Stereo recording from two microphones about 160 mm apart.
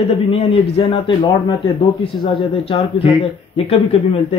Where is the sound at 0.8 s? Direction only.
30° left (ahead or behind).